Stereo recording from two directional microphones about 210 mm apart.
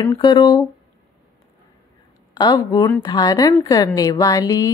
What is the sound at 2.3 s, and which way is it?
A woman's voice, 20° left (ahead or behind).